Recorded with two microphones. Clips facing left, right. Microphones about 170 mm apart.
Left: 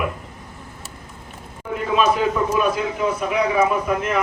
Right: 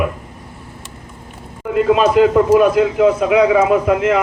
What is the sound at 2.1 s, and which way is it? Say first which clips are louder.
A man's voice: right 10 dB; 90° right.